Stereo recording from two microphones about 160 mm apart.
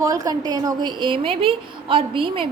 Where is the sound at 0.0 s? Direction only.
20° right (ahead or behind).